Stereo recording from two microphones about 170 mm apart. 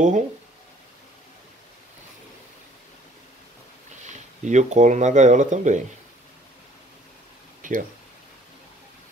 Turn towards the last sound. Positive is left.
turn(degrees=-50)  # may be behind; listen again after turning